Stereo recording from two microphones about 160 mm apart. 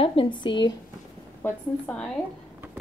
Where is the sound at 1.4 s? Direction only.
5° left (ahead or behind).